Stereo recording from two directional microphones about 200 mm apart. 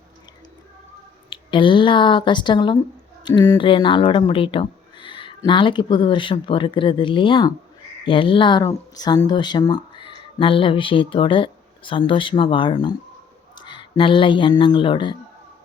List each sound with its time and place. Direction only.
1.3 s speech: 25° left (ahead or behind)